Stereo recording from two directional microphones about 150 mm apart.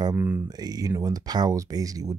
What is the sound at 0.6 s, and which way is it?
Speech, 25° right (ahead or behind).